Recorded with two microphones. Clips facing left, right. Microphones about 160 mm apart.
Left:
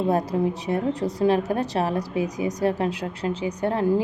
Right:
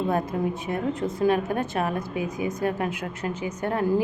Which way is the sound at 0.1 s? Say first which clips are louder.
Left 3 dB; 35° left (ahead or behind).